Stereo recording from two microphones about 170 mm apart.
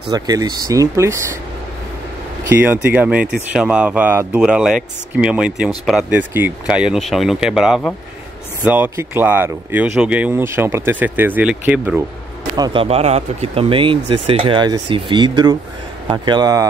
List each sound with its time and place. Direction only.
0.1 s speech: 25° right (ahead or behind)
2.4 s speech: 10° right (ahead or behind)
12.5 s speech: 25° right (ahead or behind)
12.8 s speech: 35° right (ahead or behind)